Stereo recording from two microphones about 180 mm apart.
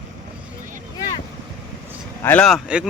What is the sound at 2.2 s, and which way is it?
Speech, 5° left (ahead or behind).